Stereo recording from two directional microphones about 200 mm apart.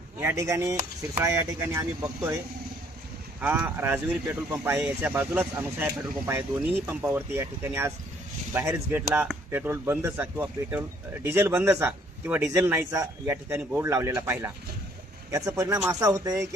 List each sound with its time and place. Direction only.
0.2 s speech: 15° right (ahead or behind)
3.4 s speech: 10° right (ahead or behind)